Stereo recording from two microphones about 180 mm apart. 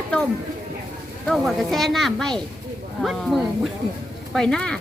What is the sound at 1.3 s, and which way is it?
Speech, centre (ahead or behind).